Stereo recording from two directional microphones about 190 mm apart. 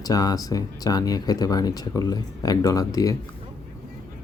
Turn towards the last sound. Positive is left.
turn(degrees=20)  # may be behind; listen again after turning